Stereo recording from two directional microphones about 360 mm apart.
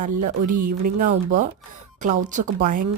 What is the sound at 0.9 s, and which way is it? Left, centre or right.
A woman's voice, right.